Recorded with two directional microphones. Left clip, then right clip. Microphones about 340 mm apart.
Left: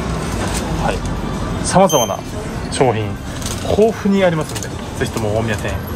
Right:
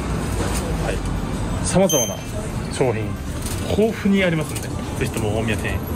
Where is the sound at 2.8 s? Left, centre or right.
Left.